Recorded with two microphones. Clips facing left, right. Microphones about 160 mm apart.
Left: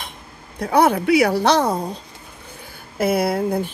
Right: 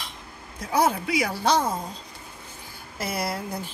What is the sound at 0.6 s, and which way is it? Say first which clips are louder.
Speech: left 7 dB; 65° left (ahead or behind).